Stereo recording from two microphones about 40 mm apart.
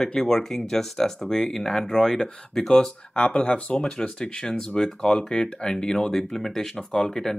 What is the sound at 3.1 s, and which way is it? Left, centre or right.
Speech, left.